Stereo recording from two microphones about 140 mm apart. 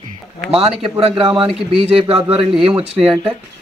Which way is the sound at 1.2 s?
40° right (ahead or behind).